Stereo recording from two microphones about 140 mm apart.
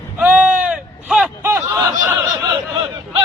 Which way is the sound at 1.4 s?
20° right (ahead or behind).